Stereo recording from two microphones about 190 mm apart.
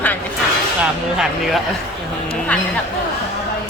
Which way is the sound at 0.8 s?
5° right (ahead or behind).